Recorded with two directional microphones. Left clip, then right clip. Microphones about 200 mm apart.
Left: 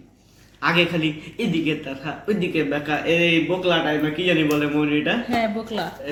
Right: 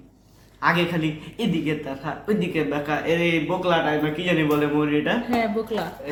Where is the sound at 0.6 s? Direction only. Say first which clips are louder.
Left 2 dB; 15° right (ahead or behind).